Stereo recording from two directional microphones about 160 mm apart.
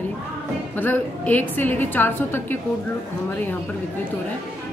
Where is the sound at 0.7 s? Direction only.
10° left (ahead or behind).